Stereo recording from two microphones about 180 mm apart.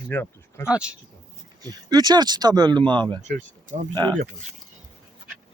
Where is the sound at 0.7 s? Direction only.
5° right (ahead or behind).